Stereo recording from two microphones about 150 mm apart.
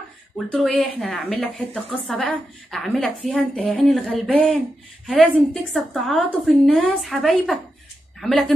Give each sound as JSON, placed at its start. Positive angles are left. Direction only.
{"t": 0.5, "sound": "a woman's voice", "side_deg": 5}